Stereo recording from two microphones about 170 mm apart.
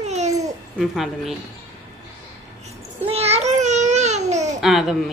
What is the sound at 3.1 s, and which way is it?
Babbling, 35° right (ahead or behind).